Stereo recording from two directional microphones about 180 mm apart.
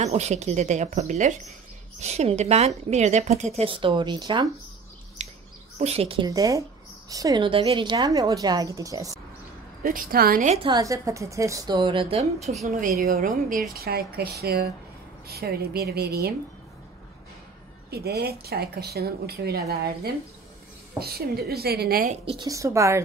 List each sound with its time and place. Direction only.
0.0 s a woman's voice: 40° right (ahead or behind)
5.2 s bird: 40° right (ahead or behind)
5.8 s a woman's voice: 35° right (ahead or behind)
6.2 s a woman's voice: 20° right (ahead or behind)
9.8 s a woman's voice: 55° right (ahead or behind)
10.7 s a woman's voice: 20° right (ahead or behind); by 12.5 s 40° right (ahead or behind)
12.8 s a woman's voice: 55° right (ahead or behind)
13.7 s speech: 60° right (ahead or behind)
17.8 s speech: 60° right (ahead or behind)
22.1 s a woman's voice: 30° right (ahead or behind)
22.5 s a woman's voice: 15° right (ahead or behind)